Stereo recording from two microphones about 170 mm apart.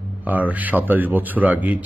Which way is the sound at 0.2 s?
10° right (ahead or behind).